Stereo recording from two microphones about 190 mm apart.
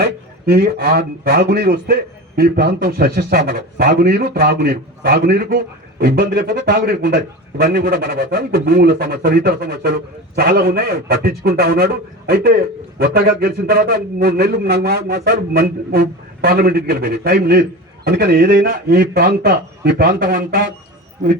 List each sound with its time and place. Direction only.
0.0 s a man's voice: 60° right (ahead or behind)